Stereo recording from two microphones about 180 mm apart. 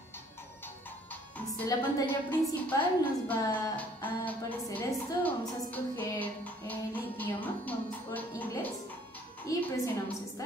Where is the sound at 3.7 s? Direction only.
10° left (ahead or behind).